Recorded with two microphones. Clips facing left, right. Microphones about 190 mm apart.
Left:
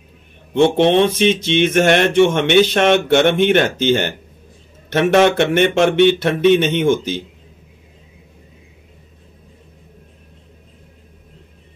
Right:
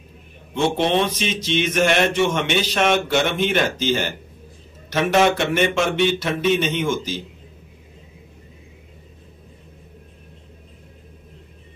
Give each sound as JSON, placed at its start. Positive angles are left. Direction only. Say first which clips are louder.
{"t": 0.6, "sound": "speech", "louder": "left 7 dB", "side_deg": 60}